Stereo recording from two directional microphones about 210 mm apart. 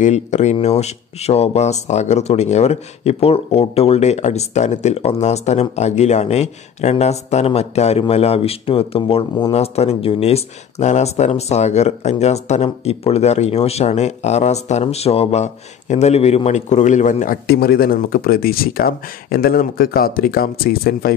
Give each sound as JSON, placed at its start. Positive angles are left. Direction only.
{"t": 0.0, "sound": "speech", "side_deg": 35}